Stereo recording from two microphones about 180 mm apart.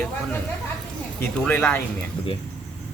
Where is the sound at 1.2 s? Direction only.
5° left (ahead or behind).